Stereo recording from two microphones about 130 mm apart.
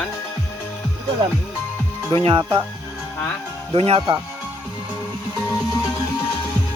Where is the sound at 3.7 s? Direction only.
50° right (ahead or behind).